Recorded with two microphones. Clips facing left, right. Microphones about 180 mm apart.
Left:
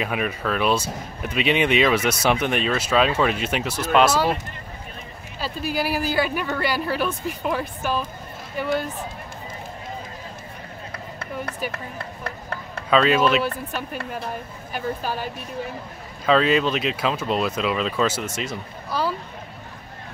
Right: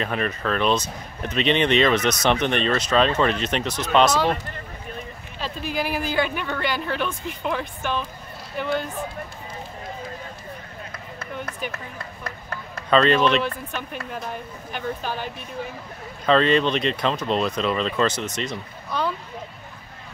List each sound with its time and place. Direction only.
0.0 s speech: 10° left (ahead or behind)
5.4 s speech: 5° left (ahead or behind)
12.9 s speech: 5° left (ahead or behind)
16.3 s speech: 5° left (ahead or behind)